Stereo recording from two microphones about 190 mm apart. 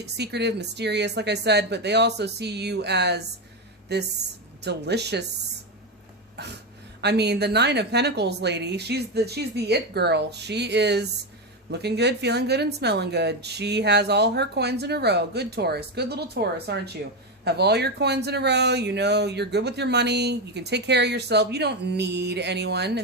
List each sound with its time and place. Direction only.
0.0 s speech: 60° right (ahead or behind)
6.4 s speech: 60° right (ahead or behind)